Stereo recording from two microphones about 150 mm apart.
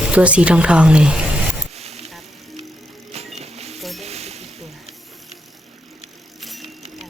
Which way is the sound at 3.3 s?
45° right (ahead or behind).